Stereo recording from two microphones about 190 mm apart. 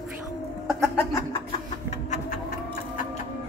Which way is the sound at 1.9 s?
40° left (ahead or behind).